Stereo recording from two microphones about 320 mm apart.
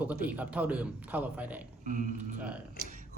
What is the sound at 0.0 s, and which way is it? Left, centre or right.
A man's voice, centre.